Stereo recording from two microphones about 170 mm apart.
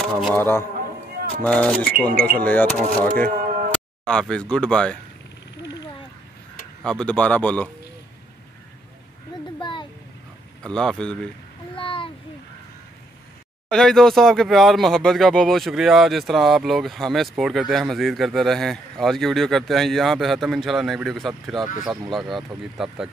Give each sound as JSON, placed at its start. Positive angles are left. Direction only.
{"t": 0.1, "sound": "a man's voice", "side_deg": 5}
{"t": 1.9, "sound": "speech", "side_deg": -60}
{"t": 2.4, "sound": "a man's voice", "side_deg": 10}
{"t": 6.8, "sound": "a man's voice", "side_deg": 5}
{"t": 9.6, "sound": "a sound", "side_deg": 30}
{"t": 10.6, "sound": "speech", "side_deg": 5}
{"t": 11.7, "sound": "a sound", "side_deg": 30}
{"t": 13.7, "sound": "speech", "side_deg": 5}